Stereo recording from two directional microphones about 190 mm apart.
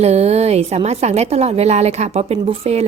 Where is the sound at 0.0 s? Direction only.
35° right (ahead or behind).